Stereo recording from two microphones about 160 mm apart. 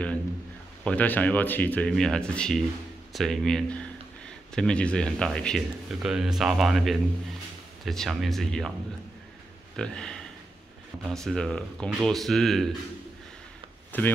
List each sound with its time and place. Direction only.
0.8 s speech: 10° left (ahead or behind)
9.8 s speech: 5° left (ahead or behind)
11.1 s speech: 5° left (ahead or behind)
13.9 s speech: 10° left (ahead or behind)